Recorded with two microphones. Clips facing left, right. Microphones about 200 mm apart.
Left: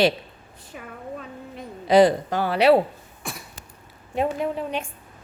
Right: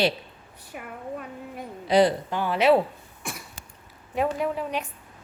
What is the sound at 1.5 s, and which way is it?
A woman's voice, 90° left.